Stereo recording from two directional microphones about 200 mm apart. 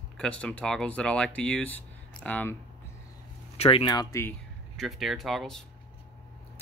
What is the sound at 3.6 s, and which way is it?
Speech, 30° left (ahead or behind).